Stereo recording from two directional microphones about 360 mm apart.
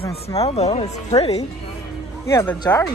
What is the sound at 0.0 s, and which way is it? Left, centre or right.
Speech, centre.